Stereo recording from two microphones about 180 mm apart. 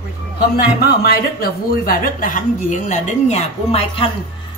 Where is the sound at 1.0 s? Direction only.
55° left (ahead or behind).